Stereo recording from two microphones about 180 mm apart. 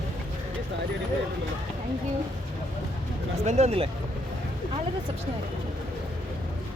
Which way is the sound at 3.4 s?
35° right (ahead or behind).